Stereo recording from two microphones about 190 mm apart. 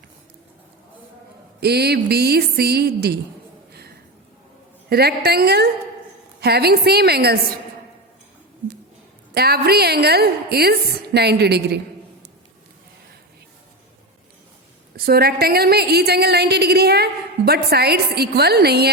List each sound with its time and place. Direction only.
1.6 s a woman's voice: 60° right (ahead or behind)
3.7 s a sound: 55° right (ahead or behind)
4.9 s a woman's voice: 55° right (ahead or behind)
9.3 s a woman's voice: 55° right (ahead or behind)
14.9 s a woman's voice: 55° right (ahead or behind)